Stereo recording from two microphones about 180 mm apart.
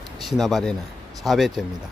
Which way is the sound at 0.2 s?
Centre (ahead or behind).